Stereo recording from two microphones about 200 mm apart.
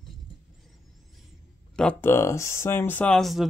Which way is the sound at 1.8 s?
10° left (ahead or behind).